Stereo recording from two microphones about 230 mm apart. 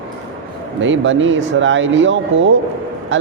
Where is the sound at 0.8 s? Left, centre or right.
Right.